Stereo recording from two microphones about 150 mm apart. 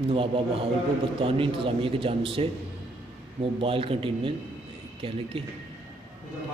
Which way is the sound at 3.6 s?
40° right (ahead or behind).